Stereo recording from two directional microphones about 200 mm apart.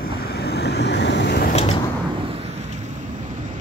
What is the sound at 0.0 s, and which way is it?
Vehicle, 50° left (ahead or behind).